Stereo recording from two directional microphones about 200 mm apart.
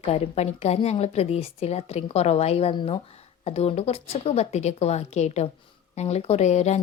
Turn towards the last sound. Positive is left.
turn(degrees=35)  # may be behind; listen again after turning